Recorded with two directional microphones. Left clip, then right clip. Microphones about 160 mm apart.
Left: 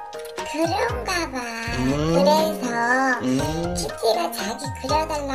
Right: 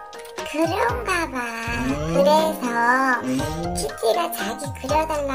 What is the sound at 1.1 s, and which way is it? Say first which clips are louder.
Music: right 2 dB; 35° right (ahead or behind).